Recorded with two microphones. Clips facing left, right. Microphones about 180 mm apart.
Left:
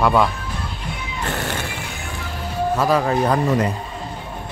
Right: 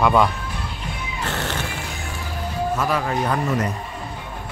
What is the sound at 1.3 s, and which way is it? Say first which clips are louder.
Music: left 2 dB; 10° left (ahead or behind).